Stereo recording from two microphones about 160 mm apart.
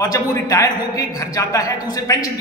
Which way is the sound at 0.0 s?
20° left (ahead or behind).